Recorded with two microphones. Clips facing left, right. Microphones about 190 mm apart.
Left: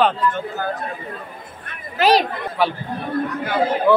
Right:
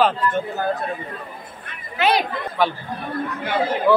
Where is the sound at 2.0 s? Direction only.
35° left (ahead or behind).